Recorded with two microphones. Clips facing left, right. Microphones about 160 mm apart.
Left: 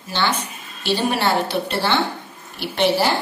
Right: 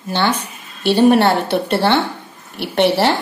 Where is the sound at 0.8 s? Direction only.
60° right (ahead or behind).